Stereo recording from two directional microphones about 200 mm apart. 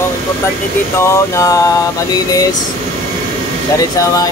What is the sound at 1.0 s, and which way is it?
Mantra, 15° left (ahead or behind).